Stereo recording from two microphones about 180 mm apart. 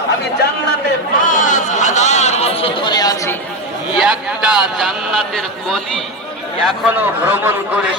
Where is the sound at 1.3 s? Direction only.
45° left (ahead or behind); by 3.4 s 20° left (ahead or behind).